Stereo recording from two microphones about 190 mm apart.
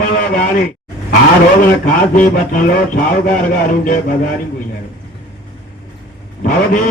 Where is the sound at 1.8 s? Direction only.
45° left (ahead or behind).